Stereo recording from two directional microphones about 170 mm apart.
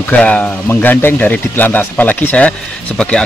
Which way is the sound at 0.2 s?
10° left (ahead or behind).